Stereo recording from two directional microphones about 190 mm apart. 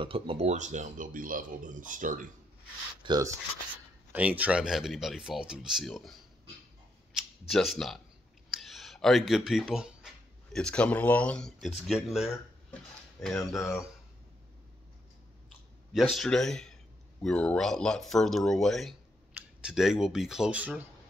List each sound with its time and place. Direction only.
0.0 s speech: 30° right (ahead or behind)
3.0 s speech: 20° right (ahead or behind)
4.1 s speech: 5° right (ahead or behind)
7.2 s speech: centre (ahead or behind)
15.9 s speech: centre (ahead or behind)